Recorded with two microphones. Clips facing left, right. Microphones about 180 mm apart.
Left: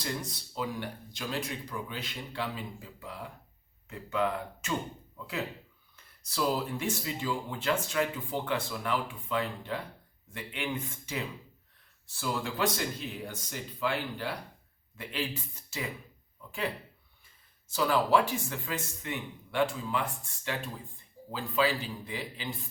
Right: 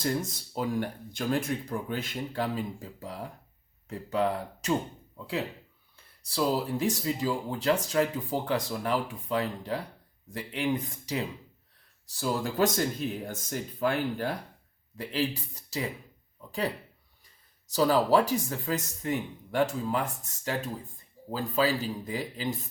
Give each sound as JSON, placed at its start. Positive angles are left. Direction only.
{"t": 0.0, "sound": "speech", "side_deg": -45}
{"t": 14.9, "sound": "speech", "side_deg": -35}